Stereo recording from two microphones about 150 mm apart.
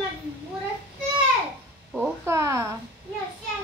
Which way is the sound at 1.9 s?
15° right (ahead or behind).